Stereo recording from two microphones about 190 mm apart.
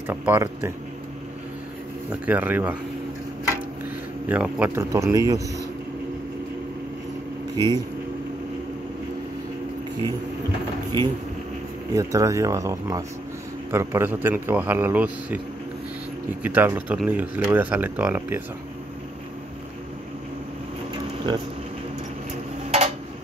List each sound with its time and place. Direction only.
0.1 s speech: 10° right (ahead or behind)
2.0 s speech: 10° right (ahead or behind)
4.3 s speech: 10° right (ahead or behind)
7.5 s speech: 25° right (ahead or behind)
10.9 s speech: 20° right (ahead or behind)
16.4 s speech: 10° right (ahead or behind)
21.3 s speech: 20° right (ahead or behind)